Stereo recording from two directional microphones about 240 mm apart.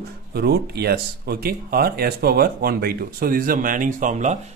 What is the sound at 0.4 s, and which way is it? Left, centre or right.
Speech, right.